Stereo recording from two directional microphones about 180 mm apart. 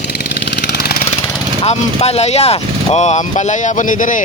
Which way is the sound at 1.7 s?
35° left (ahead or behind).